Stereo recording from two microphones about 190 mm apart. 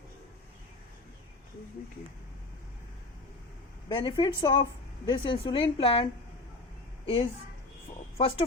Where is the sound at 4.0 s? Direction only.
20° left (ahead or behind).